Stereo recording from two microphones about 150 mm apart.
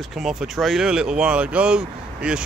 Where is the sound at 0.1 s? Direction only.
Centre (ahead or behind).